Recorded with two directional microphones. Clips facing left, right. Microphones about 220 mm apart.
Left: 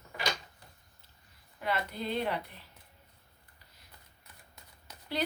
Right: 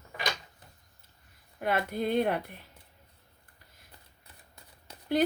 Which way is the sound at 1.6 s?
50° right (ahead or behind).